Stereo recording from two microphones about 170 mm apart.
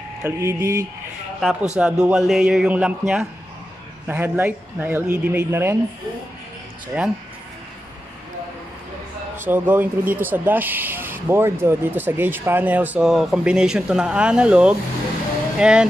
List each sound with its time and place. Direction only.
0.2 s speech: 15° right (ahead or behind)
1.4 s a man's voice: centre (ahead or behind)
6.9 s speech: 10° right (ahead or behind)
9.4 s a man's voice: 10° right (ahead or behind)